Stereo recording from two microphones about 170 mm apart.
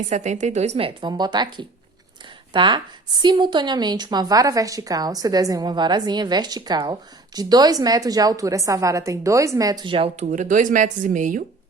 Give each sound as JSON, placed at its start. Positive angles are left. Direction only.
{"t": 0.0, "sound": "a woman's voice", "side_deg": -45}
{"t": 10.2, "sound": "speech", "side_deg": -50}